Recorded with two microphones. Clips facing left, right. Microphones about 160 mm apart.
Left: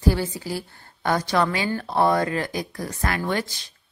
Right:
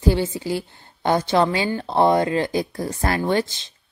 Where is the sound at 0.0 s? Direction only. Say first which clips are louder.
Right 2 dB; 25° right (ahead or behind).